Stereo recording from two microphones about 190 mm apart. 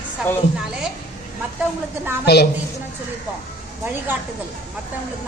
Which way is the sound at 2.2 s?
60° left (ahead or behind).